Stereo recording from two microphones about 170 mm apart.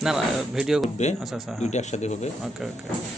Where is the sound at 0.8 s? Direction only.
40° left (ahead or behind).